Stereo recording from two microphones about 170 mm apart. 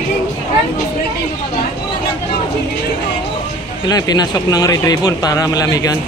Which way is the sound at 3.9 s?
25° left (ahead or behind).